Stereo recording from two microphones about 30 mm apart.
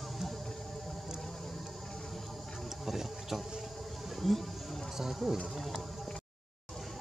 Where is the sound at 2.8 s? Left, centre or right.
Centre.